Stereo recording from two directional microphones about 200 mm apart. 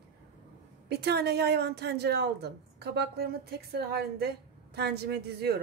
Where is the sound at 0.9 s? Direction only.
55° right (ahead or behind).